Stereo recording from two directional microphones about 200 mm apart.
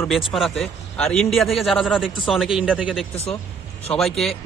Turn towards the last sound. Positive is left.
turn(degrees=5)  # may be behind; listen again after turning